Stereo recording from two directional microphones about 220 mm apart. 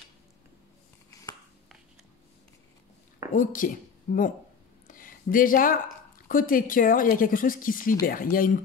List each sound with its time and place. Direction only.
3.3 s speech: 40° left (ahead or behind)
4.8 s a sound: 40° left (ahead or behind)
6.2 s a woman's voice: 40° left (ahead or behind)